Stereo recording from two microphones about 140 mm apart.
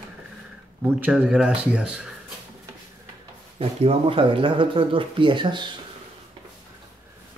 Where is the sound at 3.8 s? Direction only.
45° right (ahead or behind).